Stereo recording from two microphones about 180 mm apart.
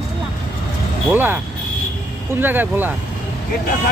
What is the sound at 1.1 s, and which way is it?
Speech, 10° right (ahead or behind).